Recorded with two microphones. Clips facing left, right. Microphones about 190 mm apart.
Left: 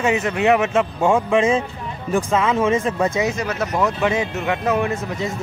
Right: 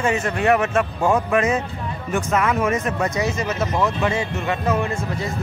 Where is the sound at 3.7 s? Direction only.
15° left (ahead or behind).